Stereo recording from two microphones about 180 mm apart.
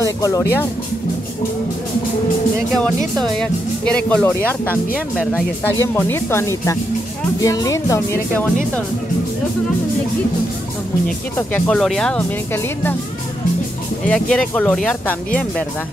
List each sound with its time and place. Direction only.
0.0 s speech: 15° left (ahead or behind)
3.2 s speech: 5° left (ahead or behind)
5.6 s speech: 10° left (ahead or behind)
11.1 s speech: 5° left (ahead or behind)
14.0 s speech: 5° left (ahead or behind)